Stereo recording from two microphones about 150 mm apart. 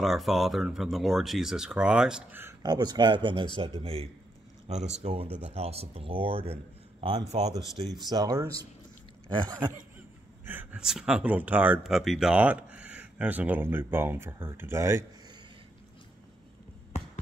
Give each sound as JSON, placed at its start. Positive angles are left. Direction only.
{"t": 0.0, "sound": "speech", "side_deg": 0}
{"t": 2.6, "sound": "speech", "side_deg": -25}
{"t": 8.1, "sound": "speech", "side_deg": -25}
{"t": 10.4, "sound": "speech", "side_deg": -15}